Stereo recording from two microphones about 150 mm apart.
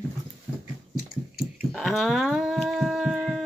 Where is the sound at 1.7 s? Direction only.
Centre (ahead or behind).